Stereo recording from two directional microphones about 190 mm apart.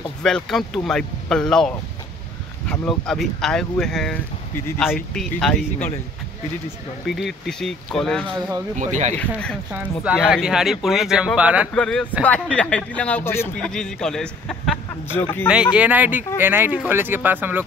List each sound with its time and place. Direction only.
0.2 s speech: 5° left (ahead or behind)
7.1 s speech: centre (ahead or behind)
8.7 s speech: 40° right (ahead or behind)
9.7 s speech: 5° right (ahead or behind)
11.7 s speech: 5° left (ahead or behind)
15.4 s speech: 5° right (ahead or behind)